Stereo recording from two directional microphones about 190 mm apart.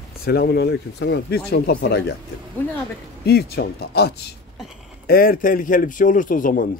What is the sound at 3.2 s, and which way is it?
A man's voice, 55° left (ahead or behind).